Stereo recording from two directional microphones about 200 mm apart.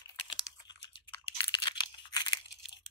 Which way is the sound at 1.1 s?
25° left (ahead or behind).